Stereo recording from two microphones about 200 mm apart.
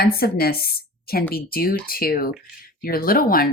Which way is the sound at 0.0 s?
50° left (ahead or behind).